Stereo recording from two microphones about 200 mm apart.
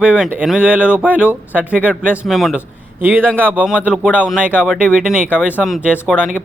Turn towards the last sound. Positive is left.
turn(degrees=-5)  # may be behind; listen again after turning